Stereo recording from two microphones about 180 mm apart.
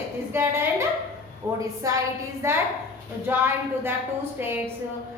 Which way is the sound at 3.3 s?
10° right (ahead or behind).